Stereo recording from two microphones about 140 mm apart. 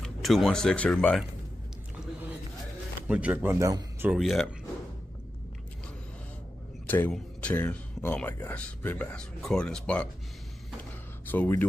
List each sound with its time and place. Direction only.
0.0 s speech: centre (ahead or behind)
3.1 s speech: 10° right (ahead or behind)
3.5 s speech: 20° right (ahead or behind)
4.1 s speech: centre (ahead or behind)
6.9 s speech: 10° left (ahead or behind)
10.8 s a sound: 15° left (ahead or behind)